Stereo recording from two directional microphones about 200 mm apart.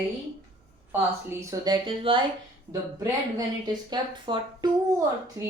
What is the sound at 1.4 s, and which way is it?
Speech, 20° right (ahead or behind).